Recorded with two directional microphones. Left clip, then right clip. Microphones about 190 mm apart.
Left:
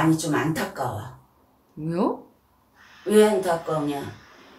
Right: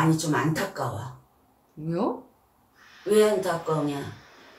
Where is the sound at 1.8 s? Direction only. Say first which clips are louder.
Left 3 dB; 20° left (ahead or behind).